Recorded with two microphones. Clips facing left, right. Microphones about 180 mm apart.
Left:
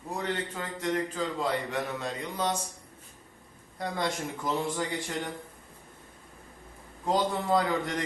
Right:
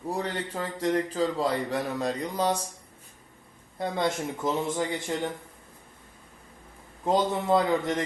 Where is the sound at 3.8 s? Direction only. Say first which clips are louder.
Right 4 dB; 25° right (ahead or behind).